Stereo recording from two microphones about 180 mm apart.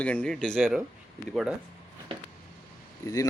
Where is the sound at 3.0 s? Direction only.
20° left (ahead or behind).